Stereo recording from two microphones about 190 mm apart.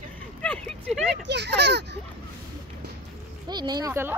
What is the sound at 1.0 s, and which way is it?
Speech, 60° right (ahead or behind).